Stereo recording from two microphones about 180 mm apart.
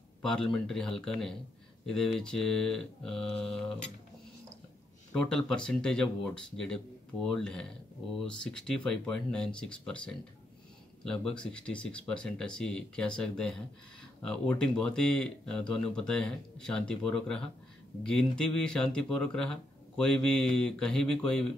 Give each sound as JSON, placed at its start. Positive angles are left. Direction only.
{"t": 0.2, "sound": "speech", "side_deg": 5}
{"t": 5.1, "sound": "speech", "side_deg": 5}